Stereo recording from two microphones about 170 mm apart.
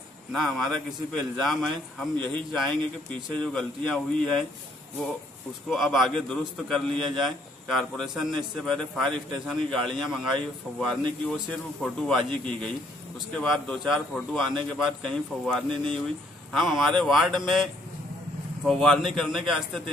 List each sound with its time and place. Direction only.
0.3 s a man's voice: centre (ahead or behind)
5.7 s a man's voice: centre (ahead or behind)
18.7 s a man's voice: centre (ahead or behind)